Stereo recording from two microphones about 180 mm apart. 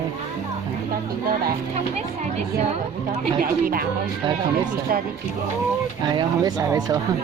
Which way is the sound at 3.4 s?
55° right (ahead or behind).